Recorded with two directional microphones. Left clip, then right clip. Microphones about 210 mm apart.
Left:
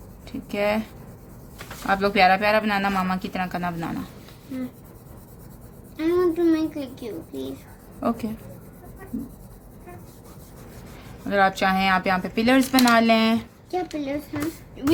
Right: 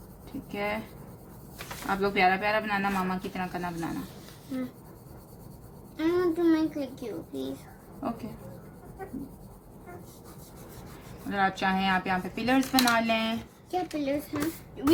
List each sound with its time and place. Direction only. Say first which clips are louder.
0.5 s speech: left 9 dB; 50° left (ahead or behind)
1.9 s speech: left 7 dB; 50° left (ahead or behind)
4.5 s a child's voice: left 2 dB; 15° right (ahead or behind)
6.0 s a child's voice: left 5 dB; 10° right (ahead or behind)
11.3 s speech: left 7 dB; 50° left (ahead or behind)
13.7 s a child's voice: left 2 dB; 10° right (ahead or behind)